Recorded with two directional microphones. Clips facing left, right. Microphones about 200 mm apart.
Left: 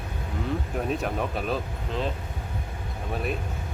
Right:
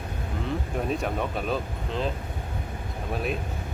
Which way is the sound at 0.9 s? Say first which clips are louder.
Even; centre (ahead or behind).